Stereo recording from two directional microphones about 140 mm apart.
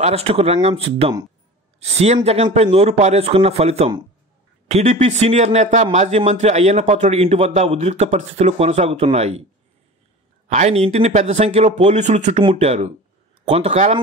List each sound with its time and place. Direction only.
0.0 s a man's voice: 45° right (ahead or behind)
10.5 s a man's voice: 50° right (ahead or behind)